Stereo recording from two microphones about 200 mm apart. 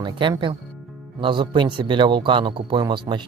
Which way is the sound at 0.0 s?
25° right (ahead or behind).